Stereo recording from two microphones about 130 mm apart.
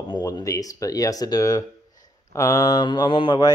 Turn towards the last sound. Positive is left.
turn(degrees=35)  # may be behind; listen again after turning